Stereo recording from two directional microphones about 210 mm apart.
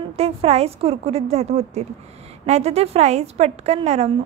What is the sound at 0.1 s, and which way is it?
A woman's voice, 30° right (ahead or behind).